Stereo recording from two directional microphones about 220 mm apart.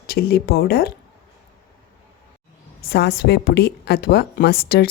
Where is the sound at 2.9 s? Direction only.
45° left (ahead or behind).